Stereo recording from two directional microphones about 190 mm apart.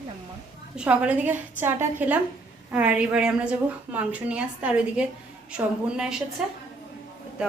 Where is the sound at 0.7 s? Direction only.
5° right (ahead or behind).